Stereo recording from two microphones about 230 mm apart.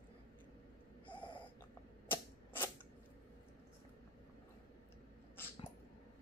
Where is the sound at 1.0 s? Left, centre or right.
Left.